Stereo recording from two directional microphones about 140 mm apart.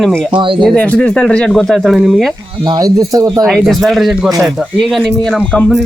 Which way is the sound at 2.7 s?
25° right (ahead or behind).